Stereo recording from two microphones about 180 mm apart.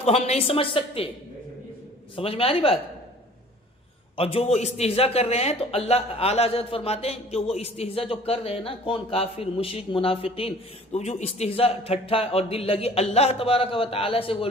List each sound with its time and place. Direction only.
0.0 s a man's voice: 35° left (ahead or behind)
2.1 s a man's voice: 30° left (ahead or behind)
4.2 s a man's voice: 30° left (ahead or behind)